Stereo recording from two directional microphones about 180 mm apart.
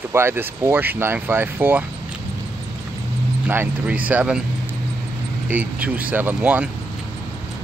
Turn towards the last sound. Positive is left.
turn(degrees=-10)  # may be behind; listen again after turning